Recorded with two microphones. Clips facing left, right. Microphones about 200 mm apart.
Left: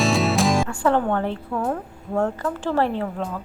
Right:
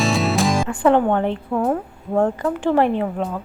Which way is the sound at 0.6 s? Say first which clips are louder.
Right 4 dB; 20° right (ahead or behind).